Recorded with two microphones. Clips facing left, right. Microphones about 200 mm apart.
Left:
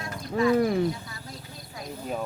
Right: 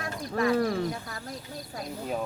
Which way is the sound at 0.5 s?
20° left (ahead or behind).